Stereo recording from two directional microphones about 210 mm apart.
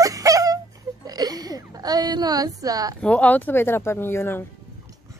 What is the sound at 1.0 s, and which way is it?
Speech, 20° right (ahead or behind).